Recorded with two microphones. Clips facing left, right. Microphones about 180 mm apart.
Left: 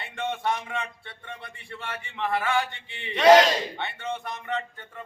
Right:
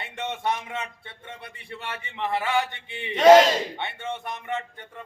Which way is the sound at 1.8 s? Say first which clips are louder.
Even; 20° right (ahead or behind).